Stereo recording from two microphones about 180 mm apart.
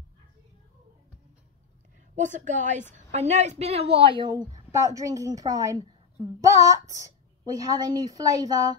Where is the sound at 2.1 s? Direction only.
45° right (ahead or behind); by 4.3 s 30° right (ahead or behind).